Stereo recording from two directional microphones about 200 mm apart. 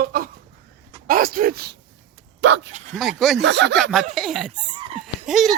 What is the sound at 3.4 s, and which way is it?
Speech, 60° right (ahead or behind).